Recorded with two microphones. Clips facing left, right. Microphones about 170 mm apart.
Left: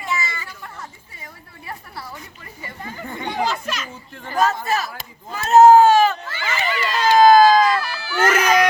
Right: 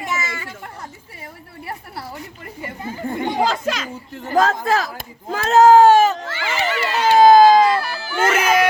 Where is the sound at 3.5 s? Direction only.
90° right.